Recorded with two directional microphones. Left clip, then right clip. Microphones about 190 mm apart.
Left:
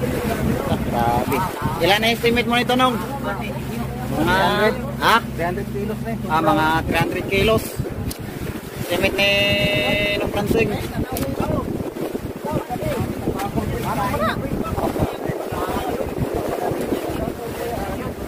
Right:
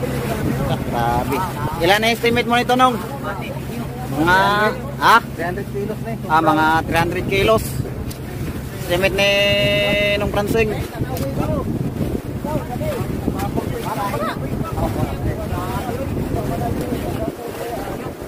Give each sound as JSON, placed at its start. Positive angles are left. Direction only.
{"t": 0.9, "sound": "speech", "side_deg": 0}
{"t": 1.8, "sound": "speech", "side_deg": -25}
{"t": 2.5, "sound": "speech", "side_deg": -10}
{"t": 4.3, "sound": "speech", "side_deg": -15}
{"t": 6.9, "sound": "speech", "side_deg": -20}
{"t": 8.9, "sound": "speech", "side_deg": -30}